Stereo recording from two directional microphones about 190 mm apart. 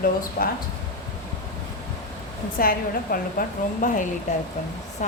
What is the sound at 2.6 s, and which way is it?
A woman's voice, 50° left (ahead or behind).